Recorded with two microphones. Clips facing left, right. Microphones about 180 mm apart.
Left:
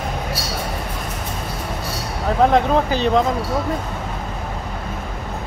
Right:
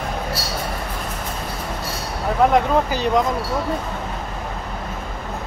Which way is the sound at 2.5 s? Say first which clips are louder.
Left 1 dB; 30° left (ahead or behind).